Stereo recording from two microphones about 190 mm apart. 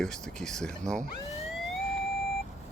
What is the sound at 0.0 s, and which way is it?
Speech, 5° left (ahead or behind).